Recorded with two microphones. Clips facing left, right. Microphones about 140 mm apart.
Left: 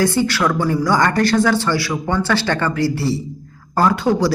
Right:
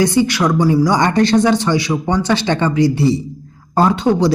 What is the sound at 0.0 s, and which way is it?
Speech, 15° right (ahead or behind).